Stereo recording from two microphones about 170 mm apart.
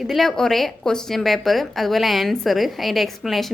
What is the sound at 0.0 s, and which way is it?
A woman's voice, centre (ahead or behind).